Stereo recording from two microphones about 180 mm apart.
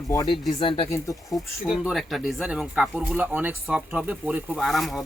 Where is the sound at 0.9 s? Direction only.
15° left (ahead or behind).